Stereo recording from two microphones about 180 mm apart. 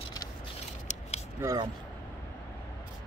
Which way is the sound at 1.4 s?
20° right (ahead or behind).